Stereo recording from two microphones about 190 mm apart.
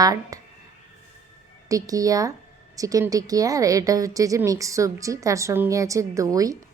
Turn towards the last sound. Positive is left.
turn(degrees=-20)  # may be behind; listen again after turning